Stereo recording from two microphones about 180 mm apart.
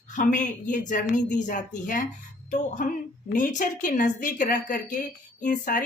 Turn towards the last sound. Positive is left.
turn(degrees=45)  # may be behind; listen again after turning